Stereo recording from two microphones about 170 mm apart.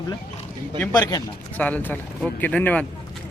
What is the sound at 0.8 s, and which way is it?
Speech, 20° left (ahead or behind).